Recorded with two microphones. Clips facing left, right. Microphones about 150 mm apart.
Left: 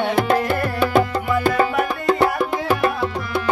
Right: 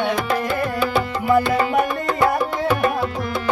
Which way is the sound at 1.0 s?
45° left (ahead or behind).